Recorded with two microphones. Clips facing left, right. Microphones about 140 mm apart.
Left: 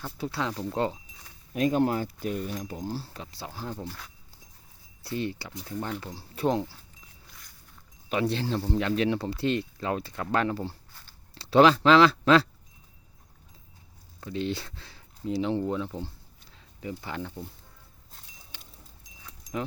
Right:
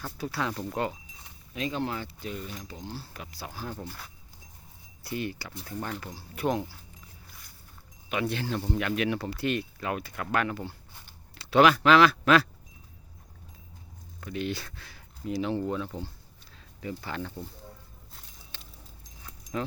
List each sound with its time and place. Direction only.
0.0 s speech: 20° left (ahead or behind)
1.5 s speech: 50° left (ahead or behind); by 3.8 s 20° left (ahead or behind)
3.8 s speech: 5° right (ahead or behind)
5.0 s speech: 25° left (ahead or behind)
8.1 s speech: 30° left (ahead or behind)
14.2 s speech: 25° left (ahead or behind)
18.5 s keys jangling: 15° left (ahead or behind)
19.2 s a sound: 10° left (ahead or behind)